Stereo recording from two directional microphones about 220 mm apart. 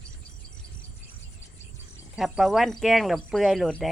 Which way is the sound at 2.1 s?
Centre (ahead or behind).